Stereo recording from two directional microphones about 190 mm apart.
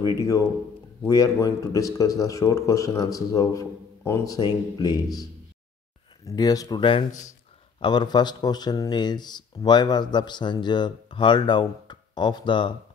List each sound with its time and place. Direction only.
1.0 s speech: 20° left (ahead or behind)
6.2 s speech: 20° left (ahead or behind)